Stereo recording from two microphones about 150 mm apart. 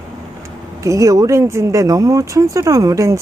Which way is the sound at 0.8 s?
20° right (ahead or behind).